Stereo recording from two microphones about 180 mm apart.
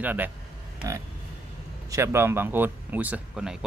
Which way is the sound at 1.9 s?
15° right (ahead or behind).